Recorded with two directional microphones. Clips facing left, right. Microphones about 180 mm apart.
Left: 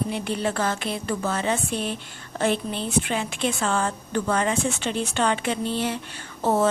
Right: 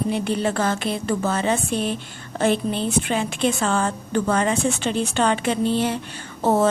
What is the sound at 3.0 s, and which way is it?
Speech, 35° right (ahead or behind).